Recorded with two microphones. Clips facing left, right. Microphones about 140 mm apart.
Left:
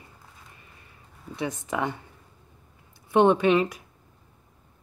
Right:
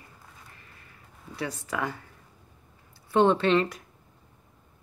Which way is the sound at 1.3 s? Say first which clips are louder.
Left 3 dB; 20° left (ahead or behind).